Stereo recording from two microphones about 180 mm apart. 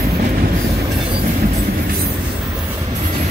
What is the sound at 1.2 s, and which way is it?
Music, 55° right (ahead or behind).